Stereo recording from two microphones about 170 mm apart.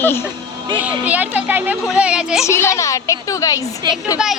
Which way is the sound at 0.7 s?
10° right (ahead or behind).